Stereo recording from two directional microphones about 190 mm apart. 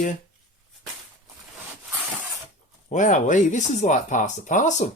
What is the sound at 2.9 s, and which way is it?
Speech, 40° left (ahead or behind).